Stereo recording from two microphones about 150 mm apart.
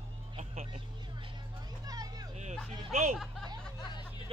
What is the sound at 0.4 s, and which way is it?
Vehicle, 40° right (ahead or behind).